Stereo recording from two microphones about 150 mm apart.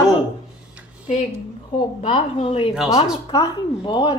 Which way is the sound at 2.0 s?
35° left (ahead or behind).